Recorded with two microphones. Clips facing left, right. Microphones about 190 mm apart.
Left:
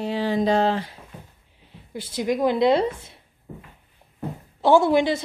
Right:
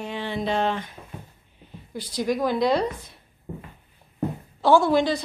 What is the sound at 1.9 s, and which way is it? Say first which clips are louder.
A woman's voice: left 1 dB; 20° left (ahead or behind).